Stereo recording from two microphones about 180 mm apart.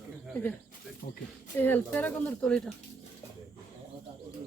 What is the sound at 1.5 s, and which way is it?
Speech, 10° left (ahead or behind).